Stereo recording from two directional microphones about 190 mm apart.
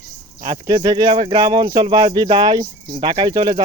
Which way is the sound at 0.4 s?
25° right (ahead or behind).